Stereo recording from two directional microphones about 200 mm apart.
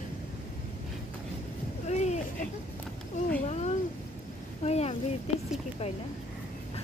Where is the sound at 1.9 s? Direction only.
35° left (ahead or behind).